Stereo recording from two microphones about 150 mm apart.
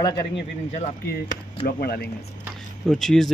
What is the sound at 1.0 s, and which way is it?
Speech, 90° left.